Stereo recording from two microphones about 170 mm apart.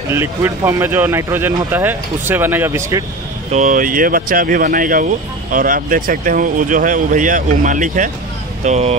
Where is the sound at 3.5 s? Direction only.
45° right (ahead or behind).